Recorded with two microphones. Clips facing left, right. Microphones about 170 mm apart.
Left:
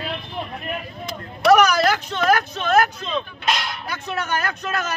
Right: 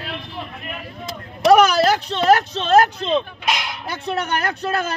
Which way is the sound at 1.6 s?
25° right (ahead or behind).